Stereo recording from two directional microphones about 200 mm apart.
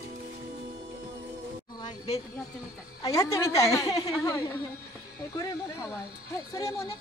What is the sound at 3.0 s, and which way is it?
A woman's voice, 15° left (ahead or behind).